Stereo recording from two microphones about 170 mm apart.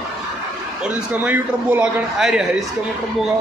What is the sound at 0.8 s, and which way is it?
A man's voice, 10° right (ahead or behind).